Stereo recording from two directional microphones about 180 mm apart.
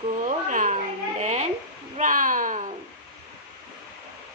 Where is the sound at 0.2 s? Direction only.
45° right (ahead or behind).